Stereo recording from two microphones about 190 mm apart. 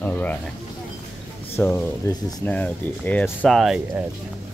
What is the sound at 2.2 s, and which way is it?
Speech, 20° left (ahead or behind).